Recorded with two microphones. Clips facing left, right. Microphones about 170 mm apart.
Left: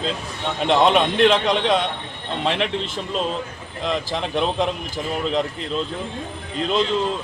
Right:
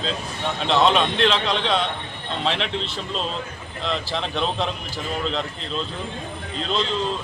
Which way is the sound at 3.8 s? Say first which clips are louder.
Left 2 dB; 15° left (ahead or behind).